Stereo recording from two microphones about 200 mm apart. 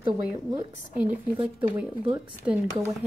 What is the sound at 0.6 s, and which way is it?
A woman's voice, 10° right (ahead or behind).